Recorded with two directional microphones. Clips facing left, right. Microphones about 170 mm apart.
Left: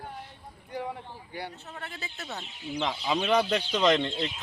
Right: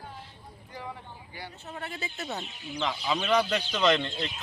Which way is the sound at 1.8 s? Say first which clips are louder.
Right 5 dB; centre (ahead or behind).